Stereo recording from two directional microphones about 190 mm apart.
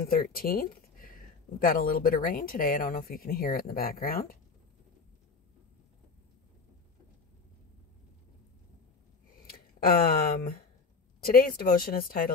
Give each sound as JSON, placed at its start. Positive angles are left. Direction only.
{"t": 0.0, "sound": "speech", "side_deg": 50}
{"t": 9.5, "sound": "speech", "side_deg": 50}